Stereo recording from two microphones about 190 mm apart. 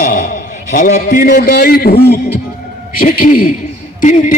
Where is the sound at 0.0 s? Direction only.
45° left (ahead or behind).